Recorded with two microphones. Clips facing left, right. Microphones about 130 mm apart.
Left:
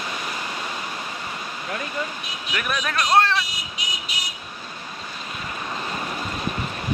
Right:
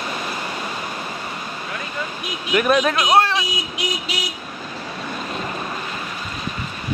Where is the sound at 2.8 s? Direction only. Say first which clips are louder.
Right 3 dB; 20° right (ahead or behind).